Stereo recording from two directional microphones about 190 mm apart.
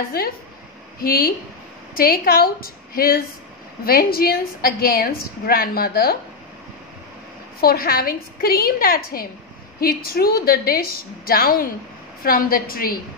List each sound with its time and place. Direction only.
0.2 s a woman's voice: 55° left (ahead or behind)
7.6 s a woman's voice: 50° left (ahead or behind)